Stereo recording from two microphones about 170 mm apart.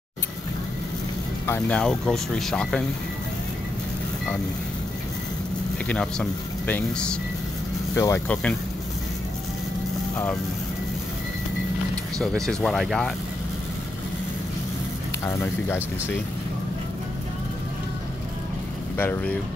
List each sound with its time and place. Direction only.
1.4 s speech: 10° left (ahead or behind)
5.9 s speech: 5° left (ahead or behind)
7.9 s speech: 15° left (ahead or behind)
12.4 s speech: 5° left (ahead or behind)
15.2 s speech: 15° left (ahead or behind)
18.9 s speech: 10° left (ahead or behind)